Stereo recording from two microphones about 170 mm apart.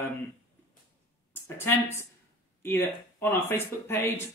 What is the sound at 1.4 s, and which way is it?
A man's voice, 15° left (ahead or behind).